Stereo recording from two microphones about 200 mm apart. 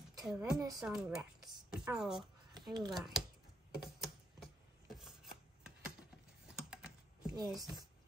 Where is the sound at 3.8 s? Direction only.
Centre (ahead or behind).